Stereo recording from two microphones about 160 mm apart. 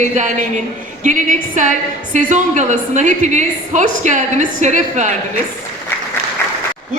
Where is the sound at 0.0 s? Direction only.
50° right (ahead or behind).